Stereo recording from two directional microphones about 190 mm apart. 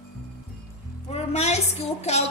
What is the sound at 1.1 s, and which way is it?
A woman's voice, 35° left (ahead or behind).